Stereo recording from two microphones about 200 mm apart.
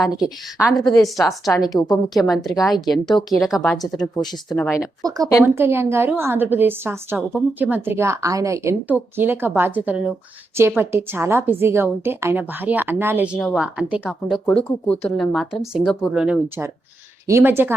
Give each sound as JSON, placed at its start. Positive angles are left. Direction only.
{"t": 0.0, "sound": "speech", "side_deg": 0}
{"t": 1.7, "sound": "speech", "side_deg": 20}
{"t": 2.3, "sound": "speech", "side_deg": 0}
{"t": 3.9, "sound": "speech", "side_deg": 20}
{"t": 4.4, "sound": "speech", "side_deg": 5}
{"t": 5.0, "sound": "a woman's voice", "side_deg": -15}